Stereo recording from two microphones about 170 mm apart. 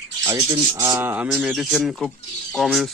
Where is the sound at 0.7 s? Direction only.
20° right (ahead or behind).